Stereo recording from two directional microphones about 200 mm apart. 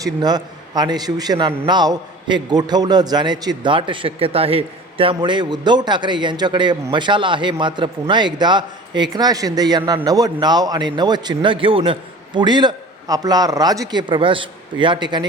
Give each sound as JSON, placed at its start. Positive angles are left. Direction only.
{"t": 0.0, "sound": "a man's voice", "side_deg": -20}